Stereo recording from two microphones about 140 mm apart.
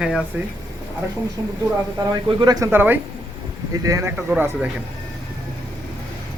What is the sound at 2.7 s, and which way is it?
Speech, 15° right (ahead or behind).